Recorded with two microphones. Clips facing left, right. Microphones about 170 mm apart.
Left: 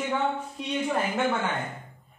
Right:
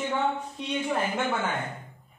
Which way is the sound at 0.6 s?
5° left (ahead or behind).